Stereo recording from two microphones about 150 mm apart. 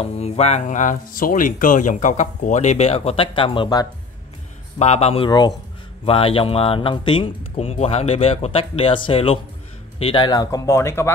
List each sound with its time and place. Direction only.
0.0 s speech: 45° left (ahead or behind)
4.7 s speech: 45° left (ahead or behind); by 11.1 s 20° left (ahead or behind)